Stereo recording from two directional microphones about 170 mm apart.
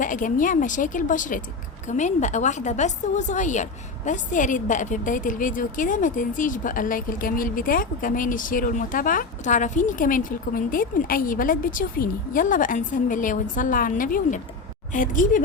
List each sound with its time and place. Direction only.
0.0 s a woman's voice: 50° left (ahead or behind)